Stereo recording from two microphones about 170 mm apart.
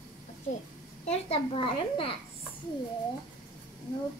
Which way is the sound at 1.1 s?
35° left (ahead or behind).